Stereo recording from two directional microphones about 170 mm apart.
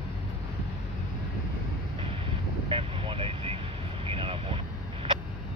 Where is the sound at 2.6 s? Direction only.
30° right (ahead or behind).